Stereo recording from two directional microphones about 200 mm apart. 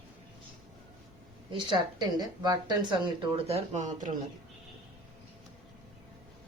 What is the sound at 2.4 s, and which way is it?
Speech, 25° right (ahead or behind).